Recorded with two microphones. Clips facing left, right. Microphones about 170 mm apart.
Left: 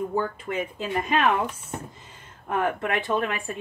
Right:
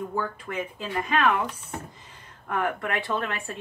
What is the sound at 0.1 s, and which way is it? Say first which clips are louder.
Speech: left 3 dB; 20° left (ahead or behind).